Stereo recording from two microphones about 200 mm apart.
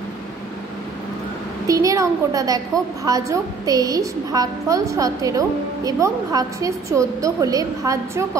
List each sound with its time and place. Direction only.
1.7 s a woman's voice: 15° right (ahead or behind)